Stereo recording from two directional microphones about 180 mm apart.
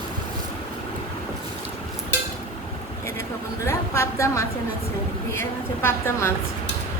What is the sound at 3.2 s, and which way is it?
A woman's voice, 15° left (ahead or behind).